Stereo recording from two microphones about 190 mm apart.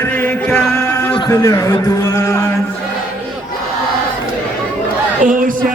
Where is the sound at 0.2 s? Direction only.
10° left (ahead or behind).